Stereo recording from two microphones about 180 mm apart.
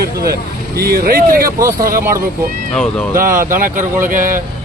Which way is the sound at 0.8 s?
55° right (ahead or behind).